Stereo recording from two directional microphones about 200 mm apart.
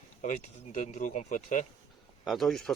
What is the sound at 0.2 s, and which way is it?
Speech, 40° left (ahead or behind).